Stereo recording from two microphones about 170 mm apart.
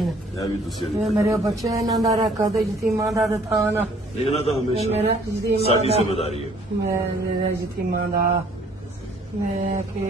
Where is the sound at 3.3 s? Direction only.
15° right (ahead or behind).